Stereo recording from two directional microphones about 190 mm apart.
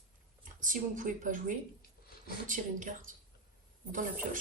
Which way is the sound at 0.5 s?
45° right (ahead or behind).